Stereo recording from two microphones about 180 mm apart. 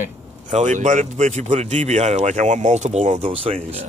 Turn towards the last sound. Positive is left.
turn(degrees=-30)  # may be behind; listen again after turning